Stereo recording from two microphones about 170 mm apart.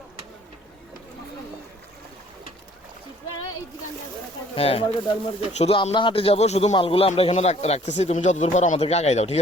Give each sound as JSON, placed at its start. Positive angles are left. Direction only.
{"t": 4.5, "sound": "speech", "side_deg": 35}